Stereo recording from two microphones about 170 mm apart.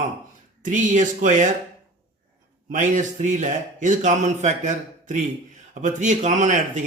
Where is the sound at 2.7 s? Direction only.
45° right (ahead or behind).